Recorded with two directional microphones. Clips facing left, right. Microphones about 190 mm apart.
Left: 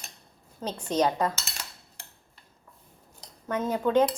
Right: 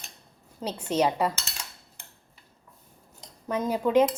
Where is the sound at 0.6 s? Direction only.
10° right (ahead or behind).